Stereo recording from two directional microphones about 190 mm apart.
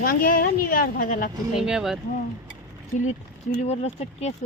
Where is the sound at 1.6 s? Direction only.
Centre (ahead or behind).